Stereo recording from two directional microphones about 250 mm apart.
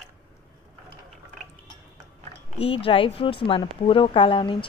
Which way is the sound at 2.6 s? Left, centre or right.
Left.